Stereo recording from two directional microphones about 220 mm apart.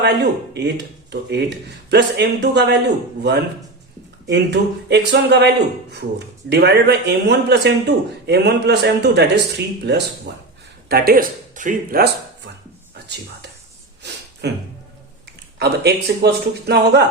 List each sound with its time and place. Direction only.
0.0 s speech: 50° right (ahead or behind)
4.3 s speech: 50° right (ahead or behind)
14.0 s a sound: 50° right (ahead or behind)
14.4 s speech: 50° right (ahead or behind)